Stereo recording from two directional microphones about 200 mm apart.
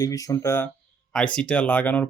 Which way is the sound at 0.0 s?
15° left (ahead or behind).